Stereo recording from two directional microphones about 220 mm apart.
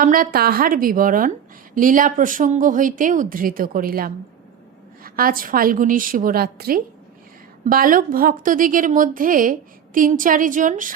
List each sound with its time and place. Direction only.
0.0 s a woman's voice: 40° right (ahead or behind)